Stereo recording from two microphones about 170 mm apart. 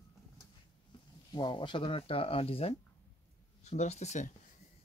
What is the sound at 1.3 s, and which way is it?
Speech, 25° left (ahead or behind).